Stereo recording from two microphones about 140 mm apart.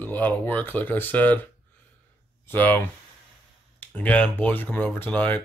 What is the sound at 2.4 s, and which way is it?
Speech, 15° left (ahead or behind).